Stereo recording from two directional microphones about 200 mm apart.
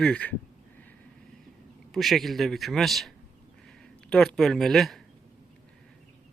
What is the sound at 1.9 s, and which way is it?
Speech, centre (ahead or behind).